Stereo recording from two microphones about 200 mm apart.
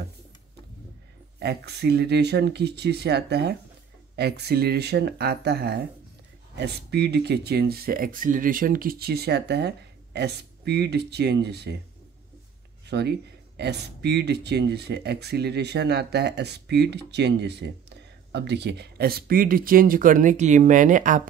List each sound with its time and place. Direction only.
1.4 s speech: 55° right (ahead or behind)
12.8 s speech: 55° right (ahead or behind); by 21.2 s 40° right (ahead or behind)